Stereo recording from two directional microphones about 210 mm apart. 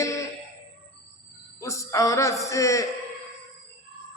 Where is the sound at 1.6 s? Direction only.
15° left (ahead or behind).